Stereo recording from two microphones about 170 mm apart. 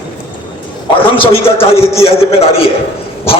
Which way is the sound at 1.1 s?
30° left (ahead or behind).